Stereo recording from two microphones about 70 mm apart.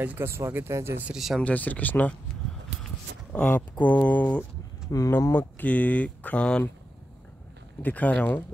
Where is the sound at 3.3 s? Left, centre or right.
Left.